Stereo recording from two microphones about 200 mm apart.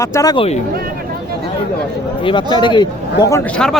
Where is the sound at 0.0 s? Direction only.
15° left (ahead or behind).